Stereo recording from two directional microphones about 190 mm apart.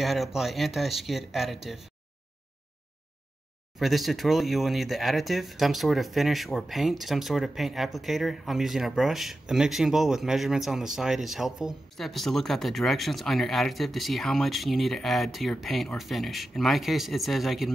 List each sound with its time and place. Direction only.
0.0 s speech: centre (ahead or behind)
3.8 s speech: centre (ahead or behind)